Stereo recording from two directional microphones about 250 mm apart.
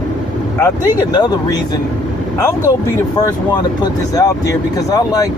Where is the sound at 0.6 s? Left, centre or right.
Centre.